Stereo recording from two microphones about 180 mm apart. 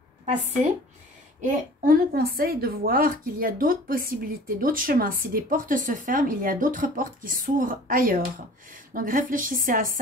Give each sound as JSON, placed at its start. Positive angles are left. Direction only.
{"t": 1.4, "sound": "a woman's voice", "side_deg": -50}